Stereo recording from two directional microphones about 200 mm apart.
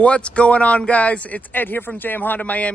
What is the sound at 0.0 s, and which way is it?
A man's voice, 5° left (ahead or behind).